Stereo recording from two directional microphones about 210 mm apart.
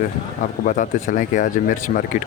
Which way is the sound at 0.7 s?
40° left (ahead or behind).